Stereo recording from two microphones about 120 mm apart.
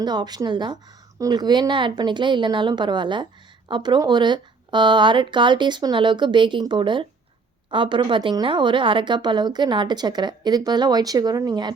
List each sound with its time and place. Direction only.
0.0 s a woman's voice: 35° right (ahead or behind)